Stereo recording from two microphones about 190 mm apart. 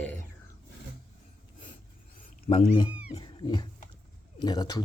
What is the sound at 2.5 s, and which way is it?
Speech, 40° left (ahead or behind).